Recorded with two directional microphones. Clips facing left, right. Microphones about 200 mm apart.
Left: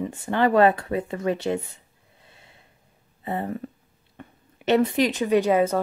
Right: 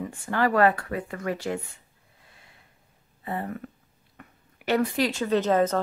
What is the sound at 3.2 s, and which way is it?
A woman's voice, 25° left (ahead or behind).